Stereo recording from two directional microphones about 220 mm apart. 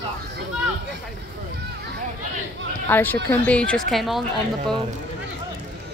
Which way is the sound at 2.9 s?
10° left (ahead or behind).